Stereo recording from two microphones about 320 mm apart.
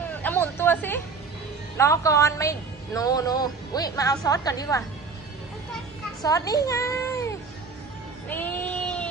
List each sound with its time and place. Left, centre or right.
0.1 s hubbub: centre
1.8 s a woman's voice: centre
6.2 s a child's voice: centre
8.3 s a sound: centre